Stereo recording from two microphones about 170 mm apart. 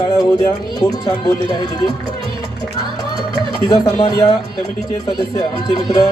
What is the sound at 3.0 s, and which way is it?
Music, 25° left (ahead or behind).